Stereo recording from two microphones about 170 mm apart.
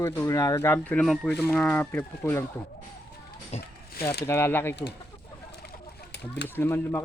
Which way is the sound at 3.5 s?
40° left (ahead or behind).